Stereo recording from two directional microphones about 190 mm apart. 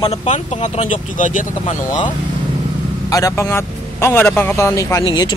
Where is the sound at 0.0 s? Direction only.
35° left (ahead or behind).